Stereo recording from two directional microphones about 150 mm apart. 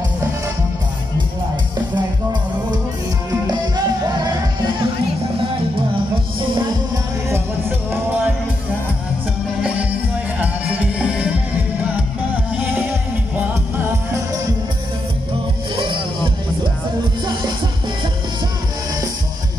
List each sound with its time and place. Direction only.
3.4 s music: 25° right (ahead or behind)
10.4 s music: 10° right (ahead or behind)
13.4 s music: 15° right (ahead or behind)
15.7 s music: 35° right (ahead or behind)
17.3 s music: 30° right (ahead or behind)